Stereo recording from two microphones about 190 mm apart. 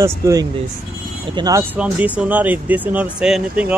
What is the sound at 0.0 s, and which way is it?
Speech, 15° right (ahead or behind).